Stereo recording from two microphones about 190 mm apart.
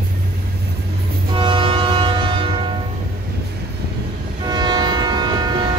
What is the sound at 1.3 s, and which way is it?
Train, 25° right (ahead or behind).